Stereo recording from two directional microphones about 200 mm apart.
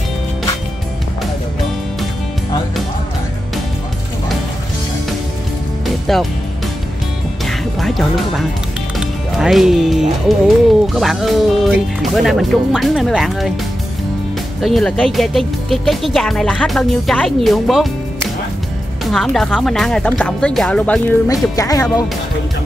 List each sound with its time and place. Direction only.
6.1 s speech: centre (ahead or behind)
7.4 s music: centre (ahead or behind)
8.9 s speech: centre (ahead or behind)
14.6 s speech: centre (ahead or behind)
19.0 s speech: centre (ahead or behind)
21.3 s speech: 15° left (ahead or behind)